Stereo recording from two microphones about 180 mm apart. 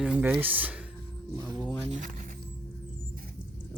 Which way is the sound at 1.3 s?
20° right (ahead or behind).